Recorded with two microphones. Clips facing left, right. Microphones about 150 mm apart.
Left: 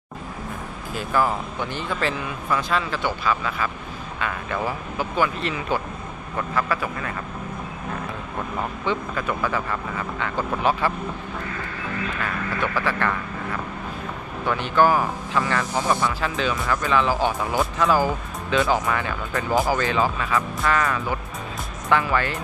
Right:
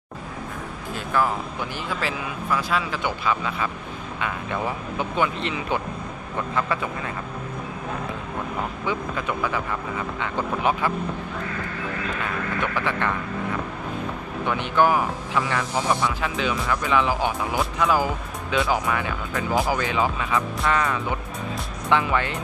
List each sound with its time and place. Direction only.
0.9 s speech: centre (ahead or behind); by 7.1 s 25° right (ahead or behind)
8.8 s speech: 15° right (ahead or behind)
13.0 s speech: 20° right (ahead or behind)
14.4 s speech: 15° right (ahead or behind)